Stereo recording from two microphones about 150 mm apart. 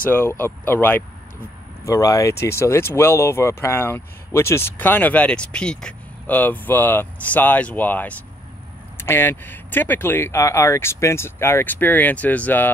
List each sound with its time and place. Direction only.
0.1 s speech: 15° left (ahead or behind)